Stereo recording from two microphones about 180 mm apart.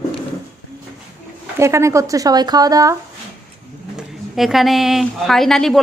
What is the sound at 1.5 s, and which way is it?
Speech, 15° right (ahead or behind).